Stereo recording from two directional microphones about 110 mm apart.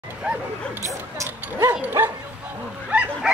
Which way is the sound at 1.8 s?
15° right (ahead or behind).